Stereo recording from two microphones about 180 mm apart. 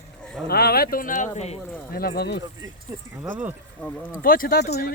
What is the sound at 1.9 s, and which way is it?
Speech, 55° left (ahead or behind).